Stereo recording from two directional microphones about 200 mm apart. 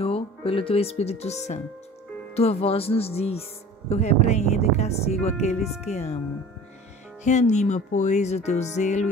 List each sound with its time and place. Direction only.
0.0 s speech: 30° left (ahead or behind)
7.2 s speech: 35° left (ahead or behind)